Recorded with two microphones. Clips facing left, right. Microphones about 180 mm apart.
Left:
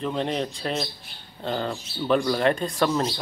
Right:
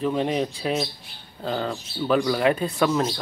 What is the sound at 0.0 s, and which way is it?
Speech, 5° right (ahead or behind).